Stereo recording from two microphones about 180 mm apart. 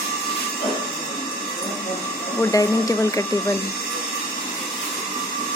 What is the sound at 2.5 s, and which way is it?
Speech, 20° left (ahead or behind).